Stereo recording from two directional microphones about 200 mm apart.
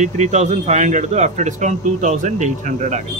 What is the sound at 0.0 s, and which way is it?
A man's voice, 35° right (ahead or behind).